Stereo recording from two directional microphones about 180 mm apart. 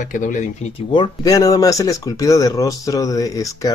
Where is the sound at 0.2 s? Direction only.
45° left (ahead or behind).